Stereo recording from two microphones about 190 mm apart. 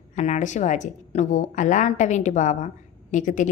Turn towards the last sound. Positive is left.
turn(degrees=40)  # may be behind; listen again after turning